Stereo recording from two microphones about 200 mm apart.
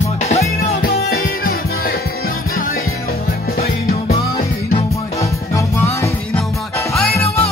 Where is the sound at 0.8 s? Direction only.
50° left (ahead or behind).